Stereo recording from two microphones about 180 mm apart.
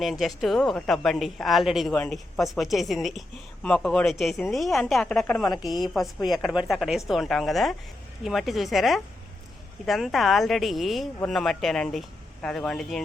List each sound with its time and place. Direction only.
0.0 s a woman's voice: centre (ahead or behind)
5.5 s a woman's voice: 20° left (ahead or behind)
6.2 s a woman's voice: centre (ahead or behind)